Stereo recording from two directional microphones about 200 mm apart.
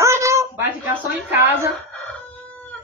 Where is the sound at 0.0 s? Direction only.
15° right (ahead or behind).